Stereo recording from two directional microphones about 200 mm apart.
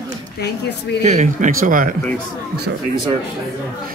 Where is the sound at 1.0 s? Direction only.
35° right (ahead or behind).